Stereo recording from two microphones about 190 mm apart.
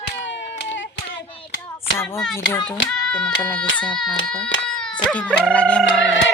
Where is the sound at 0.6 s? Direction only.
70° left (ahead or behind).